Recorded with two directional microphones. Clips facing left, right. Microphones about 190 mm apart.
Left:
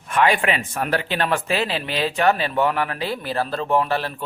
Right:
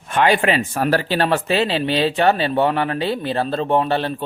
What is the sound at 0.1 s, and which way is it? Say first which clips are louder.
Speech: right 3 dB; 30° right (ahead or behind).